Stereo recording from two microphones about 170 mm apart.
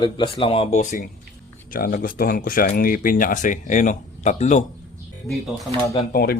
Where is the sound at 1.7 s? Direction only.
55° left (ahead or behind).